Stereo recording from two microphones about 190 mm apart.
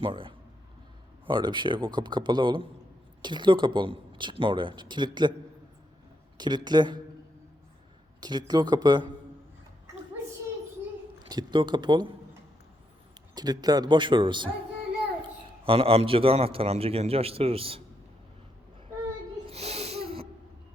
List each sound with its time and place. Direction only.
0.0 s a man's voice: 25° right (ahead or behind)
6.3 s speech: 20° right (ahead or behind)
8.2 s speech: 20° right (ahead or behind)
11.3 s speech: 25° right (ahead or behind)
13.3 s speech: 20° right (ahead or behind)
15.6 s a man's voice: 30° right (ahead or behind)
19.5 s snort: 35° right (ahead or behind)